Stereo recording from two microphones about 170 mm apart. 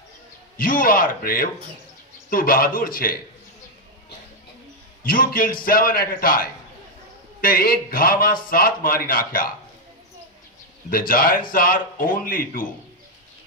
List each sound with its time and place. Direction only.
0.6 s a man's voice: 55° left (ahead or behind)
5.0 s a man's voice: 55° left (ahead or behind)
10.9 s a man's voice: 60° left (ahead or behind)